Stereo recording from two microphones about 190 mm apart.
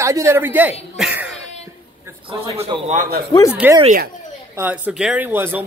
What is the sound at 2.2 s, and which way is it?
Speech, 30° right (ahead or behind).